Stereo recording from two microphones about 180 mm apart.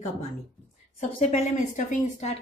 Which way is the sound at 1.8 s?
45° left (ahead or behind).